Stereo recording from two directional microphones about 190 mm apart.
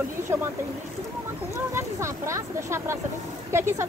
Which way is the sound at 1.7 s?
15° right (ahead or behind).